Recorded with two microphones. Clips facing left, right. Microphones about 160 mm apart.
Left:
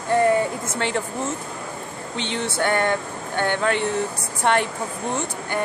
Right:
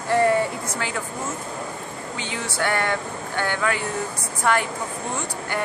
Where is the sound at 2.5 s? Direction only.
25° left (ahead or behind).